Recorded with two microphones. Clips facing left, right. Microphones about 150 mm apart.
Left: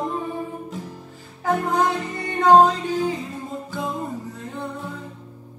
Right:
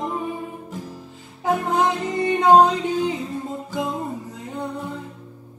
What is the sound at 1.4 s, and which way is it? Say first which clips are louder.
Music: right 1 dB; 20° right (ahead or behind).